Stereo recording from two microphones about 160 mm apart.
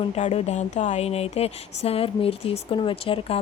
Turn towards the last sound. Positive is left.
turn(degrees=35)  # may be behind; listen again after turning